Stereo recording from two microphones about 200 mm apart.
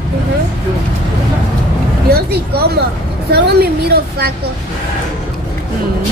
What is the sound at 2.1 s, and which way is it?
A woman's voice, 50° right (ahead or behind).